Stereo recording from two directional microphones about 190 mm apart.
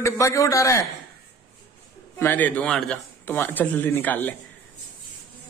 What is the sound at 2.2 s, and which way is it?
Speech, 10° left (ahead or behind).